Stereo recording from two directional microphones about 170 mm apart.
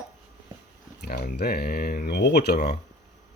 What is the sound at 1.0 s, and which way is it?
Speech, 65° left (ahead or behind).